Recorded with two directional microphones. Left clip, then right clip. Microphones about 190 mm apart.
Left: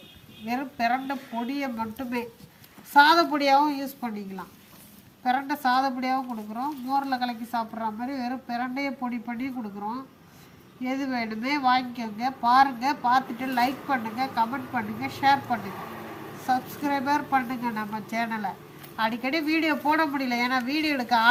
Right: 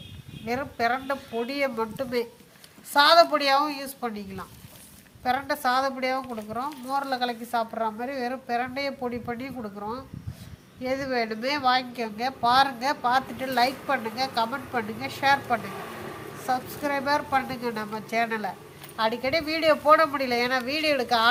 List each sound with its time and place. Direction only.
0.4 s a woman's voice: 25° right (ahead or behind)
5.2 s a woman's voice: 30° right (ahead or behind)
10.8 s a woman's voice: 40° right (ahead or behind)
16.5 s a woman's voice: 25° right (ahead or behind)